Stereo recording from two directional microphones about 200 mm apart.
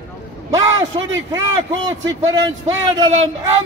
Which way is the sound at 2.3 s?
15° right (ahead or behind).